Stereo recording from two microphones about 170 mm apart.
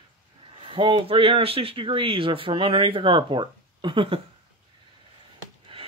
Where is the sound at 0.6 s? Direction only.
30° right (ahead or behind).